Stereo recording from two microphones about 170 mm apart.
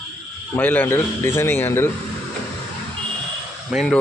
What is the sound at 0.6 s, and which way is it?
Speech, 10° left (ahead or behind).